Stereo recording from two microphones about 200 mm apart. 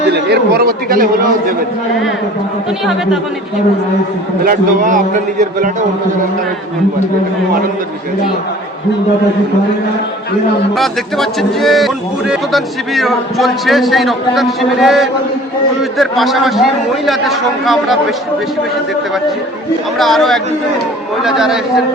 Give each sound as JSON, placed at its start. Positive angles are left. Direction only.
{"t": 0.1, "sound": "speech", "side_deg": -50}
{"t": 4.4, "sound": "a man's voice", "side_deg": -40}
{"t": 10.8, "sound": "speech", "side_deg": 0}
{"t": 20.0, "sound": "speech", "side_deg": 0}